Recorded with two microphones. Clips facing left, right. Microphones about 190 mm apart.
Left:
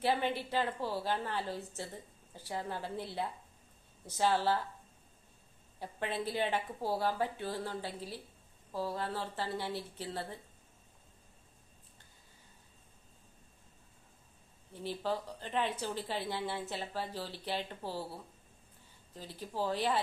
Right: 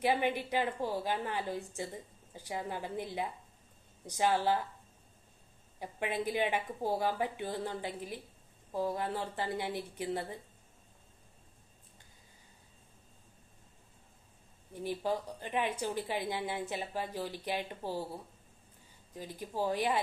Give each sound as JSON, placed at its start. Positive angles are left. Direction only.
{"t": 0.0, "sound": "a woman's voice", "side_deg": -15}
{"t": 5.8, "sound": "a woman's voice", "side_deg": -15}
{"t": 14.7, "sound": "a woman's voice", "side_deg": -15}
{"t": 19.1, "sound": "a woman's voice", "side_deg": -15}